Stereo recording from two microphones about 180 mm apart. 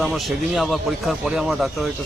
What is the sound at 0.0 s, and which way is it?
Speech, centre (ahead or behind).